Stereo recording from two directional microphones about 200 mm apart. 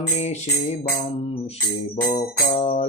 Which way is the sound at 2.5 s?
30° left (ahead or behind).